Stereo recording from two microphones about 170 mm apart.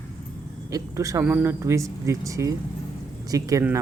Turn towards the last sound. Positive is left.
turn(degrees=-20)  # may be behind; listen again after turning